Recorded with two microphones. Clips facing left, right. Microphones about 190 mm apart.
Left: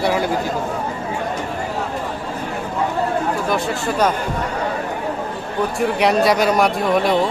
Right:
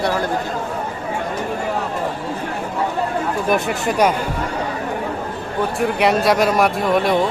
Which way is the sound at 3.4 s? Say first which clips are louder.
Right 2 dB; 20° right (ahead or behind).